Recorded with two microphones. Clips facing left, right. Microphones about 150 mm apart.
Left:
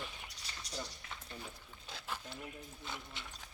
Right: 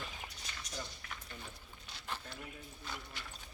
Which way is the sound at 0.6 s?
30° left (ahead or behind).